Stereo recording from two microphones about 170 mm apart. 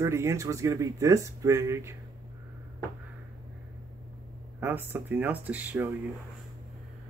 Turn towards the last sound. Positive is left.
turn(degrees=-10)  # may be behind; listen again after turning